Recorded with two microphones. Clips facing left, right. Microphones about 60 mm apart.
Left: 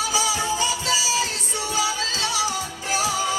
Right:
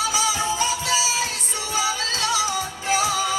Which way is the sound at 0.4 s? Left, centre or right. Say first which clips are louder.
Even; right.